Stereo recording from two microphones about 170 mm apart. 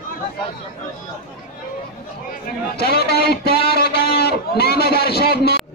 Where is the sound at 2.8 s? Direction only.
65° left (ahead or behind).